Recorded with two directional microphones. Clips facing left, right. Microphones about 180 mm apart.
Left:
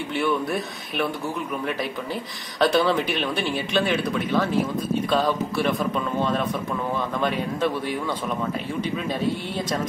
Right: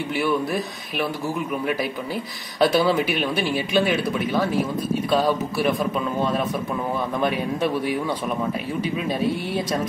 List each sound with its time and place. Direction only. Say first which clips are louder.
0.1 s speech: right 1 dB; 5° right (ahead or behind)
2.6 s speech: right 1 dB; 5° right (ahead or behind)